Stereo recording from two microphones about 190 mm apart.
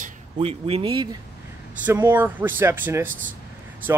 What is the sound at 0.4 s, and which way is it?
Speech, 30° right (ahead or behind).